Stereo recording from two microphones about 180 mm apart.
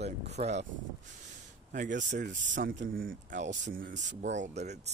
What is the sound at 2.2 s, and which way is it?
Speech, 85° right.